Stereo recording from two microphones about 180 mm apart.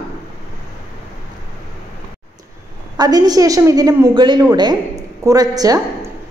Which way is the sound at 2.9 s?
20° right (ahead or behind).